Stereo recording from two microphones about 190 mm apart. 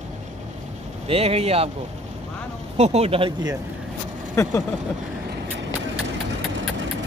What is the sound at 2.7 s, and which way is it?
Speech, 35° right (ahead or behind).